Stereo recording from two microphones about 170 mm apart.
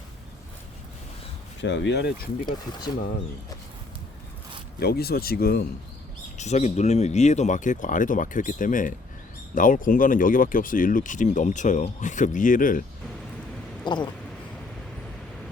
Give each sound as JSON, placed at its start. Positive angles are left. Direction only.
{"t": 1.6, "sound": "speech", "side_deg": 90}
{"t": 4.8, "sound": "speech", "side_deg": 65}
{"t": 6.3, "sound": "speech", "side_deg": 40}
{"t": 13.8, "sound": "a sound", "side_deg": 25}